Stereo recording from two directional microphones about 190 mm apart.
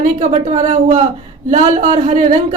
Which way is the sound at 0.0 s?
40° right (ahead or behind).